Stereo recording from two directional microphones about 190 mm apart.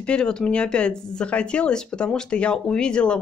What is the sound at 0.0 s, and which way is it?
Speech, 5° left (ahead or behind).